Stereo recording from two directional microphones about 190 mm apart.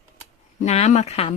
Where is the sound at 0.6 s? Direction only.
35° left (ahead or behind).